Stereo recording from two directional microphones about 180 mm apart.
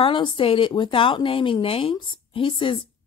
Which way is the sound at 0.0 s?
25° left (ahead or behind).